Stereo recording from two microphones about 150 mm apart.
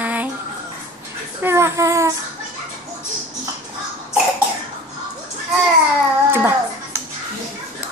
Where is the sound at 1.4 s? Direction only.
15° right (ahead or behind).